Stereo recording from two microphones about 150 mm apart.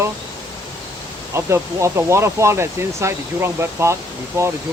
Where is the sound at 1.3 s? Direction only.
20° right (ahead or behind).